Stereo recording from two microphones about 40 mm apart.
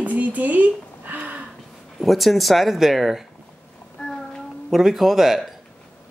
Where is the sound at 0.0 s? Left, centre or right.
Right.